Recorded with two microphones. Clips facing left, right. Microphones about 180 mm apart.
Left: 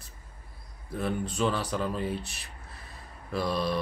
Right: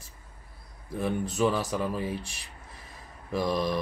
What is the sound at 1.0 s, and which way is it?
Speech, 10° right (ahead or behind).